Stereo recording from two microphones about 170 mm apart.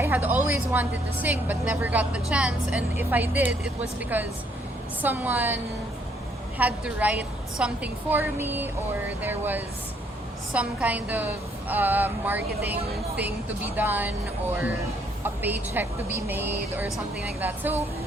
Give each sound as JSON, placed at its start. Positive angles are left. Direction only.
{"t": 0.0, "sound": "a woman's voice", "side_deg": -10}
{"t": 6.6, "sound": "a woman's voice", "side_deg": -10}
{"t": 13.7, "sound": "a woman's voice", "side_deg": -10}
{"t": 15.2, "sound": "a woman's voice", "side_deg": -10}